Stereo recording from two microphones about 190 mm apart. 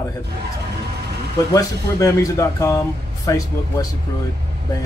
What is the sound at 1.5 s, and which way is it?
Speech, 20° left (ahead or behind).